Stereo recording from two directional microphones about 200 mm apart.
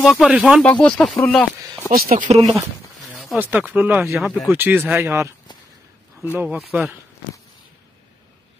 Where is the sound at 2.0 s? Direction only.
35° right (ahead or behind).